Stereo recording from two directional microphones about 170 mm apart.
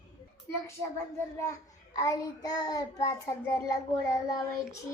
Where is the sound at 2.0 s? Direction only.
20° left (ahead or behind).